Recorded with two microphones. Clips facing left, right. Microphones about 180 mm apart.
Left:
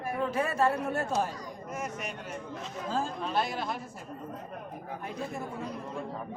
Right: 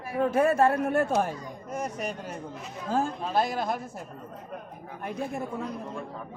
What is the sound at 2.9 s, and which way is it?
Speech, 55° right (ahead or behind).